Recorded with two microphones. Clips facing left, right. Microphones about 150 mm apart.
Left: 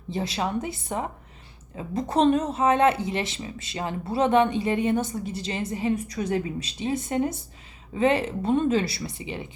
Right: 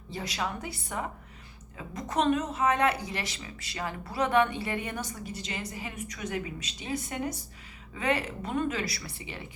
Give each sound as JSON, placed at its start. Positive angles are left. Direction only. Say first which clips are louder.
{"t": 0.1, "sound": "speech", "louder": "left 7 dB", "side_deg": 25}